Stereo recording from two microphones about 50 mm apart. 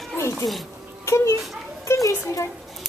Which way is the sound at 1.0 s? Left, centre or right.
Left.